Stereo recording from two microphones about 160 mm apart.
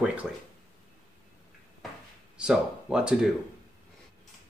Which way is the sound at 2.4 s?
5° right (ahead or behind).